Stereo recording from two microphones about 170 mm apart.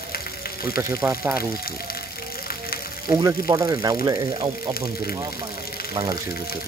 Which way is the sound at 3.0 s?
20° right (ahead or behind).